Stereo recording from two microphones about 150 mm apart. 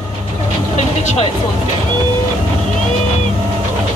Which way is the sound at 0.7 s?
50° left (ahead or behind).